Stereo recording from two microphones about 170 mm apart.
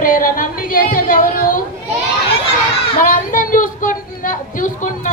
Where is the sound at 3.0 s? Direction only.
55° left (ahead or behind).